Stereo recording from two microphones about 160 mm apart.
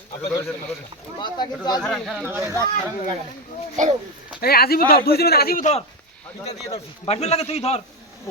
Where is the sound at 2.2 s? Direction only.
15° right (ahead or behind).